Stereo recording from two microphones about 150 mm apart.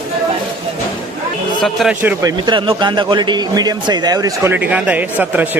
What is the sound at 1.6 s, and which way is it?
Speech, 5° left (ahead or behind).